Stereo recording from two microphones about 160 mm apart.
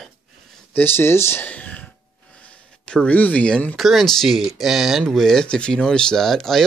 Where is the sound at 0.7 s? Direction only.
15° left (ahead or behind).